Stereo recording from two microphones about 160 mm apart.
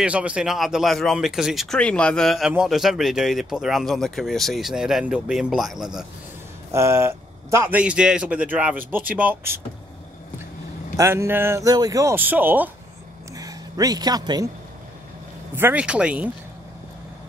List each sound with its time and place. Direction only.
0.0 s speech: 5° right (ahead or behind)
6.7 s a man's voice: 15° right (ahead or behind)
11.0 s a man's voice: 15° right (ahead or behind)
13.3 s speech: 20° right (ahead or behind)
15.5 s a man's voice: 10° right (ahead or behind)